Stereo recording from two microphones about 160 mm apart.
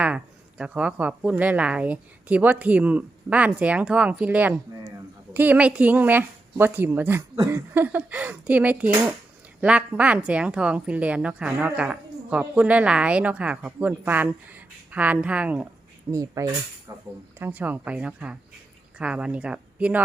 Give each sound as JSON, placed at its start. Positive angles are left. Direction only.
{"t": 0.0, "sound": "a woman's voice", "side_deg": -5}
{"t": 16.1, "sound": "speech", "side_deg": -20}
{"t": 17.4, "sound": "a woman's voice", "side_deg": -10}